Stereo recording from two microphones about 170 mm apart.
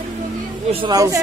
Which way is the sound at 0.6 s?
35° right (ahead or behind).